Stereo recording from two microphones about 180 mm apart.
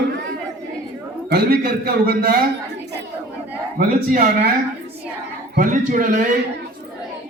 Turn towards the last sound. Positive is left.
turn(degrees=-50)  # may be behind; listen again after turning